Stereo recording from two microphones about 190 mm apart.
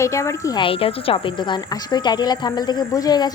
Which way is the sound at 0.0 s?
15° left (ahead or behind).